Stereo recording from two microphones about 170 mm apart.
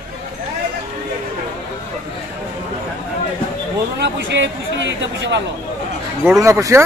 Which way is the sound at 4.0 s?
90° right.